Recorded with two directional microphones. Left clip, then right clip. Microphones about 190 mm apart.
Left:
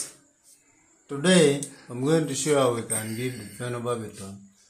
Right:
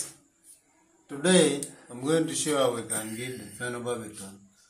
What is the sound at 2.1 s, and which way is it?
Speech, 55° left (ahead or behind).